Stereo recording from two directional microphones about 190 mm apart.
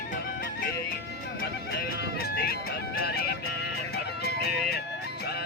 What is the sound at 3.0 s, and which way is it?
Music, 55° left (ahead or behind).